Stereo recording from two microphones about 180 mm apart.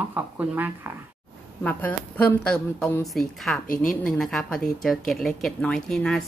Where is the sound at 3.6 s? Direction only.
50° left (ahead or behind).